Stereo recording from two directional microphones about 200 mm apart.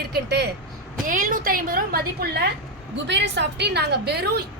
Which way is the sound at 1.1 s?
40° right (ahead or behind).